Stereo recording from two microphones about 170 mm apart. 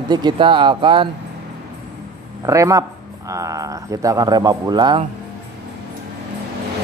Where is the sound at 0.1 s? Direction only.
25° right (ahead or behind).